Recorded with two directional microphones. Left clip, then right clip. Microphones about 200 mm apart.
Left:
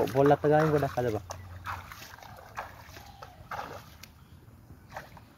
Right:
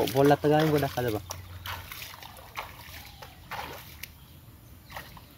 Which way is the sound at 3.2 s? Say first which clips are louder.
Even; 15° right (ahead or behind).